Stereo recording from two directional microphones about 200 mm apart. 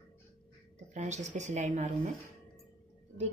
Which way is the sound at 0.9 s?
35° right (ahead or behind).